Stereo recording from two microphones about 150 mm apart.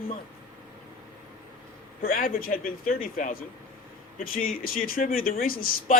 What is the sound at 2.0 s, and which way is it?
Speech, 70° left (ahead or behind).